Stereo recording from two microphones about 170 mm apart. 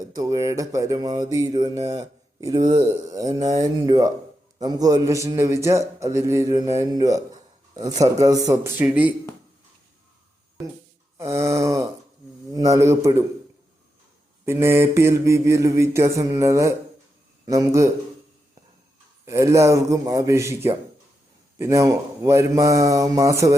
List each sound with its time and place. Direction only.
0.1 s speech: 20° right (ahead or behind)
4.6 s mantra: 20° right (ahead or behind)
6.7 s speech: 20° right (ahead or behind)
8.8 s mantra: 10° right (ahead or behind)
11.2 s mantra: 15° right (ahead or behind)
12.5 s speech: 20° right (ahead or behind)
14.4 s mantra: 15° right (ahead or behind)
17.4 s speech: 20° right (ahead or behind)
19.2 s mantra: 15° right (ahead or behind)
21.6 s speech: 20° right (ahead or behind)